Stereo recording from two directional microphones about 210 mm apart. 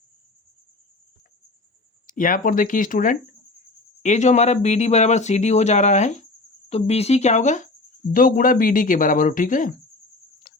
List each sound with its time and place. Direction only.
2.0 s speech: 40° left (ahead or behind)